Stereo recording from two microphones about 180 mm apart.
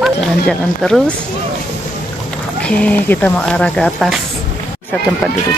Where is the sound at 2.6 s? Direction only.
5° left (ahead or behind).